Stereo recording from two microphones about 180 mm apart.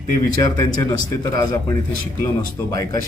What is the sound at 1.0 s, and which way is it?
Speech, 20° left (ahead or behind).